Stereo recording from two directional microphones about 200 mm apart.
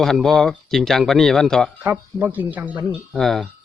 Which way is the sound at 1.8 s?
10° right (ahead or behind).